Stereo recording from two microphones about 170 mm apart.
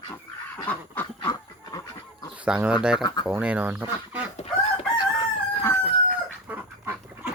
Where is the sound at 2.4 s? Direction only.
5° right (ahead or behind).